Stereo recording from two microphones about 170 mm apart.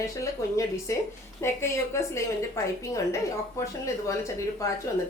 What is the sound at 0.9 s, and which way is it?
Speech, 15° left (ahead or behind).